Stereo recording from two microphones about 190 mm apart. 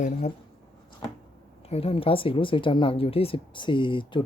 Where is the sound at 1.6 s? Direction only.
30° left (ahead or behind).